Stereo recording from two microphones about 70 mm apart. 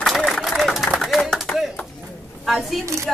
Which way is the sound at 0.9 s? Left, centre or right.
Centre.